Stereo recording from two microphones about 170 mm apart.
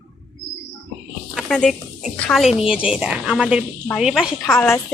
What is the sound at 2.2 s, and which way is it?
A woman's voice, centre (ahead or behind).